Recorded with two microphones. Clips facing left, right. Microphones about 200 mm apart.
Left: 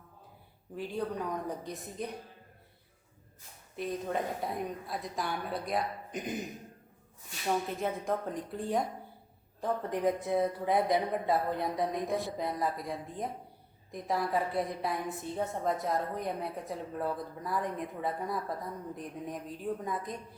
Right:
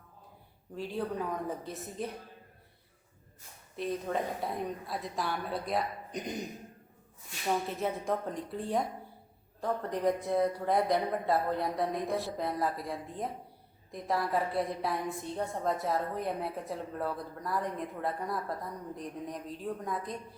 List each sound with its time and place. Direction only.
0.9 s a woman's voice: centre (ahead or behind)
3.8 s a woman's voice: centre (ahead or behind)
7.4 s a woman's voice: centre (ahead or behind)